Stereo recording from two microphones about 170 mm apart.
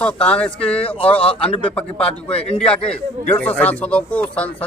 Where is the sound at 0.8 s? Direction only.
35° left (ahead or behind).